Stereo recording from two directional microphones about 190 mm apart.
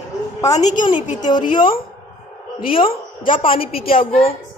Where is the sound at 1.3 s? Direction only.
25° left (ahead or behind).